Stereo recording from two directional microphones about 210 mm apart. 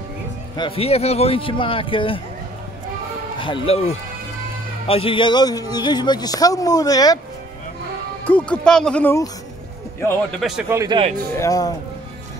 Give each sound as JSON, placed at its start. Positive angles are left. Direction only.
{"t": 0.6, "sound": "speech", "side_deg": 25}
{"t": 3.3, "sound": "speech", "side_deg": 25}
{"t": 8.3, "sound": "speech", "side_deg": 5}
{"t": 10.7, "sound": "a man's voice", "side_deg": -15}
{"t": 11.3, "sound": "speech", "side_deg": 15}